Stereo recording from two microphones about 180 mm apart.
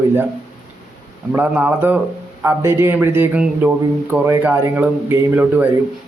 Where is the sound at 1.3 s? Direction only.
10° right (ahead or behind).